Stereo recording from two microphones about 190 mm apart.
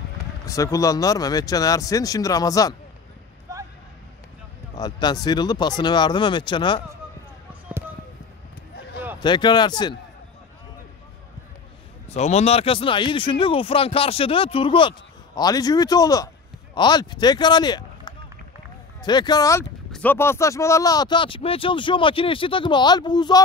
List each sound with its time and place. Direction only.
0.5 s speech: 15° left (ahead or behind)
4.7 s speech: 20° left (ahead or behind)
9.2 s speech: 25° left (ahead or behind)
12.1 s speech: 35° left (ahead or behind); by 19.6 s 20° left (ahead or behind)
19.9 s speech: 10° left (ahead or behind)